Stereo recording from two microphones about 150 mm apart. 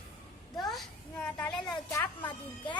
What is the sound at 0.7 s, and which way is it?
Speech, 5° left (ahead or behind).